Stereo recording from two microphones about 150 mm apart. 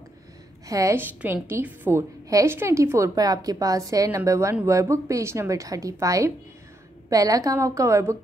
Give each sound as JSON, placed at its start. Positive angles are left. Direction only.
{"t": 0.7, "sound": "a woman's voice", "side_deg": -20}